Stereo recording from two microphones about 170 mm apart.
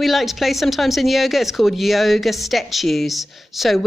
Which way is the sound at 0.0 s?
Centre (ahead or behind).